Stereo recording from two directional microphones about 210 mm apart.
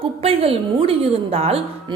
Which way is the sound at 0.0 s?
30° right (ahead or behind).